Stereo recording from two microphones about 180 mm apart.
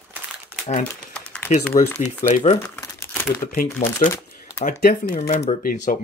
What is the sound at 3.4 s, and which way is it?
Speech, 50° left (ahead or behind).